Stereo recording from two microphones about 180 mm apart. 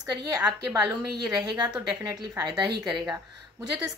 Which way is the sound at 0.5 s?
15° right (ahead or behind).